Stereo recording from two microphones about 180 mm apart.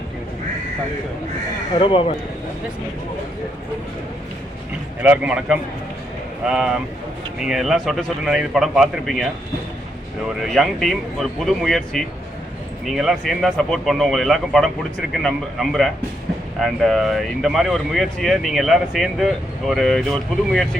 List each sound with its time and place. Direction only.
1.8 s speech: 30° left (ahead or behind)
5.0 s a man's voice: 5° right (ahead or behind)
10.4 s speech: centre (ahead or behind)